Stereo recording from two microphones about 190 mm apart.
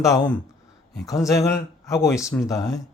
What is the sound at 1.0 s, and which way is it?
Speech, 15° left (ahead or behind).